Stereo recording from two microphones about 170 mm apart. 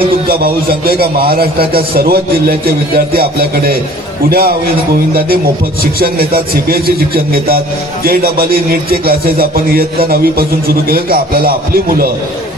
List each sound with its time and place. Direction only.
0.3 s a man's voice: 60° right (ahead or behind)
5.9 s a man's voice: 60° right (ahead or behind)